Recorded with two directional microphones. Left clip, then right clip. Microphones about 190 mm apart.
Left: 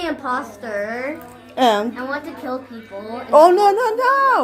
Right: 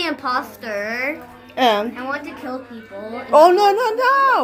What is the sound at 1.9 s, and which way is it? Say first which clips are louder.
Speech: even; 10° right (ahead or behind).